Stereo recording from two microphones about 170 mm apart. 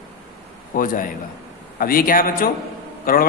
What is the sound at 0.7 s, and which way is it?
A man's voice, 55° left (ahead or behind).